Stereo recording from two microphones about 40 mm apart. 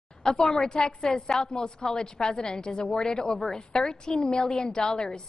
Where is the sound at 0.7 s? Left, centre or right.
Centre.